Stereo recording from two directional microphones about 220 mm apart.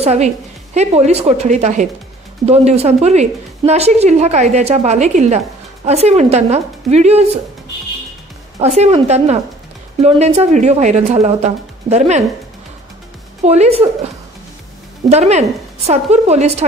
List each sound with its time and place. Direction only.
0.0 s a woman's voice: 30° right (ahead or behind)
8.5 s a woman's voice: 30° right (ahead or behind)
13.4 s a woman's voice: 30° right (ahead or behind)
15.0 s a woman's voice: 30° right (ahead or behind)